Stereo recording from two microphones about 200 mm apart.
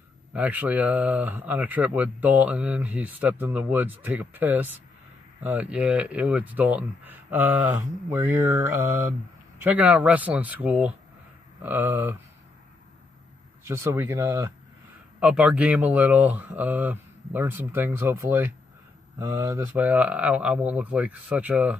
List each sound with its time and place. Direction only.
0.3 s speech: 5° right (ahead or behind)
13.7 s speech: 15° right (ahead or behind)